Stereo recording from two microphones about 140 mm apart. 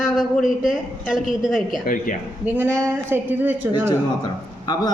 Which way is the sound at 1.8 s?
70° left (ahead or behind).